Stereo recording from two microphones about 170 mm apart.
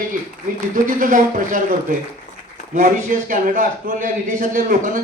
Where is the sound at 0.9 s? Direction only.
50° right (ahead or behind).